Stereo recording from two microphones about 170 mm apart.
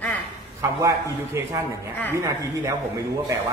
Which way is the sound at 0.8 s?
15° right (ahead or behind).